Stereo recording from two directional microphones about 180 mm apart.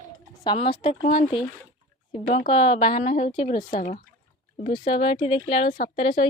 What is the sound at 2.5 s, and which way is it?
Speech, 30° left (ahead or behind).